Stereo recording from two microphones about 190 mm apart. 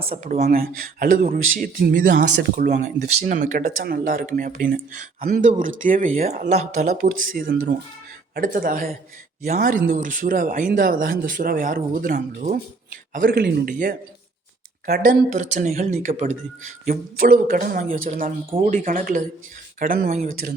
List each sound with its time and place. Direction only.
0.1 s speech: 35° right (ahead or behind)
0.4 s speech: 50° right (ahead or behind)
2.8 s speech: 40° right (ahead or behind)
7.0 s speech: 50° right (ahead or behind)
14.8 s speech: 60° right (ahead or behind)
15.3 s speech: 40° right (ahead or behind)